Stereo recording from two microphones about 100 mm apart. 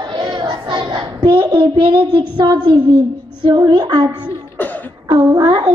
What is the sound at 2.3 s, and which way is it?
A woman's voice, 45° right (ahead or behind).